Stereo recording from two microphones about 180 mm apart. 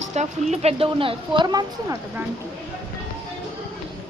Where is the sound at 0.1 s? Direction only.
40° right (ahead or behind); by 2.2 s 20° right (ahead or behind).